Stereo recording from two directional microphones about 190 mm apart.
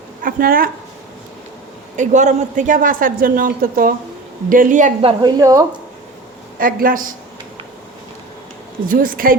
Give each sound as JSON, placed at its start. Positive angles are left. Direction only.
{"t": 0.2, "sound": "speech", "side_deg": -50}
{"t": 2.0, "sound": "speech", "side_deg": -40}
{"t": 5.0, "sound": "a woman's voice", "side_deg": -20}
{"t": 6.6, "sound": "speech", "side_deg": -50}
{"t": 8.9, "sound": "speech", "side_deg": -50}